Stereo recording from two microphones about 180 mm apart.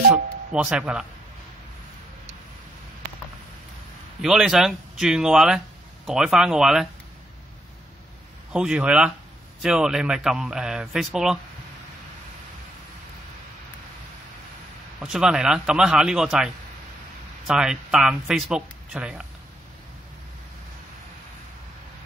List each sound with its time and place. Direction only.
0.1 s speech: 5° right (ahead or behind)
4.2 s speech: centre (ahead or behind)
8.5 s speech: 5° right (ahead or behind)
15.0 s speech: 5° right (ahead or behind)
17.5 s speech: 5° right (ahead or behind)